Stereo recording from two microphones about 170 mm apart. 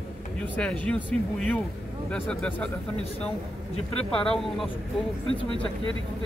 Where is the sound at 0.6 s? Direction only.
5° left (ahead or behind).